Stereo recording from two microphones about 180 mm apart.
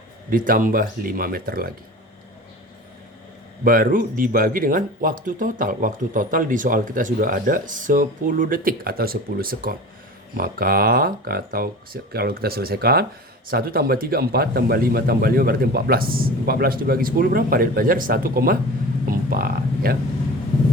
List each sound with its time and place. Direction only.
0.3 s speech: 50° right (ahead or behind)
3.6 s speech: 50° right (ahead or behind)
19.0 s a sound: 55° right (ahead or behind)